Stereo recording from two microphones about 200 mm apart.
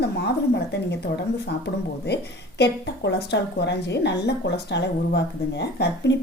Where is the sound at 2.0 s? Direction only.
55° left (ahead or behind).